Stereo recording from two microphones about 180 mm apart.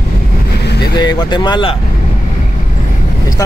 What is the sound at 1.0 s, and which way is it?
Speech, 25° left (ahead or behind).